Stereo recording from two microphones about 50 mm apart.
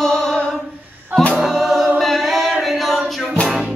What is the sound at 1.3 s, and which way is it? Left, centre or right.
Choir, centre.